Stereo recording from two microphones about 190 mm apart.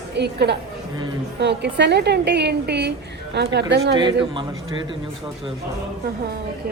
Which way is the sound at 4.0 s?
25° right (ahead or behind).